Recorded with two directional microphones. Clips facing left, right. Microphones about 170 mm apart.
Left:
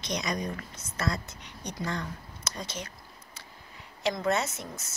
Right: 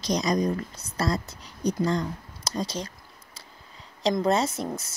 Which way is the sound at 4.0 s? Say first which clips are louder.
Right 5 dB; 30° right (ahead or behind).